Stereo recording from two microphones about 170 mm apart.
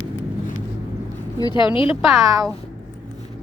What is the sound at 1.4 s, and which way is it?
Speech, 25° left (ahead or behind).